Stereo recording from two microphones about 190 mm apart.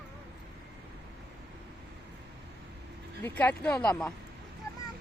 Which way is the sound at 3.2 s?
10° left (ahead or behind).